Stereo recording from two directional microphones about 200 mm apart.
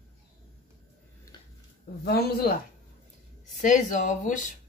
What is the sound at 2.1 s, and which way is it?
Speech, 50° left (ahead or behind).